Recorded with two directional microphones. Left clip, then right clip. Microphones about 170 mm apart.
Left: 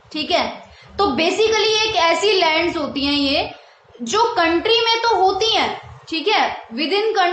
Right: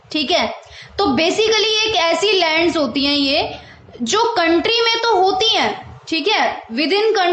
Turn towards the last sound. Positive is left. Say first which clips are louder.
# right 2 dB
turn(degrees=-35)  # may be behind; listen again after turning